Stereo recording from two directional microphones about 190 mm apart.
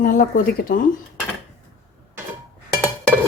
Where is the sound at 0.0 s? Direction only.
45° left (ahead or behind).